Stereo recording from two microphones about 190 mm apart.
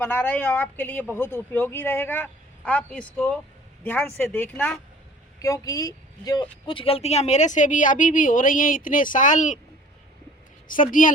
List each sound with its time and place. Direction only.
0.0 s speech: 10° left (ahead or behind); by 9.6 s 40° left (ahead or behind)
10.7 s a woman's voice: 45° left (ahead or behind)